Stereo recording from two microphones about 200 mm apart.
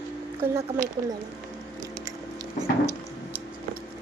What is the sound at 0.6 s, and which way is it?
Speech, 40° right (ahead or behind).